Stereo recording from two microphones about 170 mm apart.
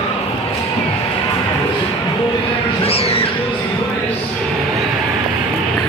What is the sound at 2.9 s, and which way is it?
Music, 35° left (ahead or behind).